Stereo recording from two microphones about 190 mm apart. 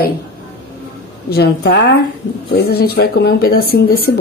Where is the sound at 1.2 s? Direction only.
60° left (ahead or behind).